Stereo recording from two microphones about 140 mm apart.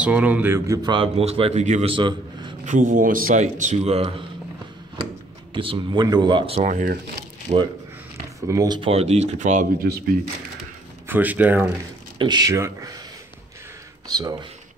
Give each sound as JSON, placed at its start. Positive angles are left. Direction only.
{"t": 0.0, "sound": "speech", "side_deg": -10}
{"t": 0.8, "sound": "speech", "side_deg": -40}
{"t": 1.9, "sound": "speech", "side_deg": -35}
{"t": 2.6, "sound": "speech", "side_deg": -65}
{"t": 5.5, "sound": "speech", "side_deg": -40}
{"t": 6.7, "sound": "speech", "side_deg": -75}
{"t": 7.5, "sound": "speech", "side_deg": -45}
{"t": 8.4, "sound": "speech", "side_deg": -25}
{"t": 11.1, "sound": "speech", "side_deg": -10}
{"t": 12.2, "sound": "speech", "side_deg": -30}
{"t": 14.0, "sound": "speech", "side_deg": -30}